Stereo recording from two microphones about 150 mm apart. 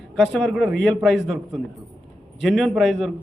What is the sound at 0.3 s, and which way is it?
A man's voice, centre (ahead or behind).